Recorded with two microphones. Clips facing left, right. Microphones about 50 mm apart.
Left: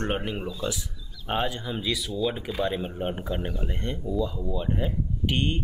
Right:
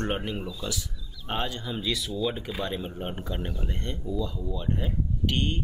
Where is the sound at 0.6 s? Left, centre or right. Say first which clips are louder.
Left 3 dB; centre.